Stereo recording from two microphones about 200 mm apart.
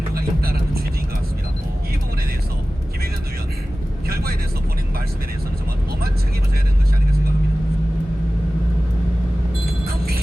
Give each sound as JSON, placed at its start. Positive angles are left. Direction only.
{"t": 0.1, "sound": "vehicle", "side_deg": -50}
{"t": 4.1, "sound": "vehicle", "side_deg": -50}